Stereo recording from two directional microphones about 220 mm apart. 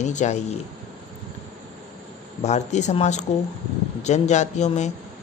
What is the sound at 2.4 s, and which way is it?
Speech, 30° left (ahead or behind).